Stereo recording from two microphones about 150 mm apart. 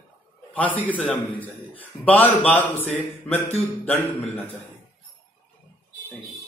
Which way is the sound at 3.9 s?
45° left (ahead or behind).